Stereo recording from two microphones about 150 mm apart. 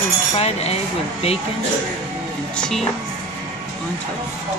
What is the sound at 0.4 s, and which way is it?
Speech, 45° left (ahead or behind).